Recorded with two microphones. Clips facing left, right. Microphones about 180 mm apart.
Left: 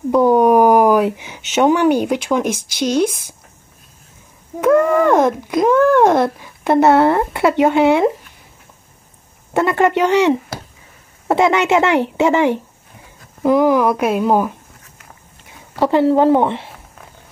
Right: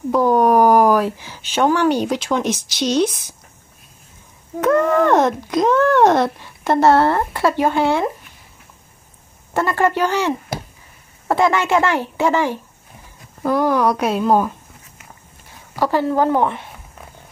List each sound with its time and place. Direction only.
0.2 s a woman's voice: 15° left (ahead or behind)
4.6 s a child's voice: 5° left (ahead or behind)
6.6 s speech: 15° left (ahead or behind)
9.5 s speech: 20° left (ahead or behind)
13.4 s a child's voice: 10° left (ahead or behind)
15.7 s speech: 25° left (ahead or behind)